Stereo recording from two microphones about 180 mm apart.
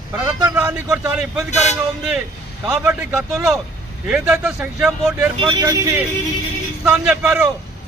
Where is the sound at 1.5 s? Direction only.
40° left (ahead or behind).